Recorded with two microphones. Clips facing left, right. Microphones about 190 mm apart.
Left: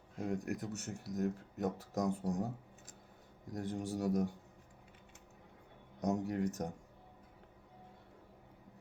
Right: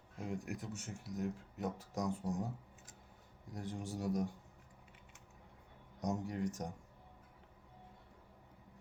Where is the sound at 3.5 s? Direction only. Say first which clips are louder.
Left 5 dB; 40° left (ahead or behind).